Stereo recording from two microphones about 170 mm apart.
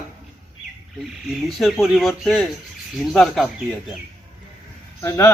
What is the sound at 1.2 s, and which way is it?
Speech, centre (ahead or behind).